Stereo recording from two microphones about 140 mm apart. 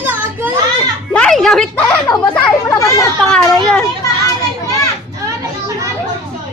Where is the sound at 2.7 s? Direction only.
25° left (ahead or behind).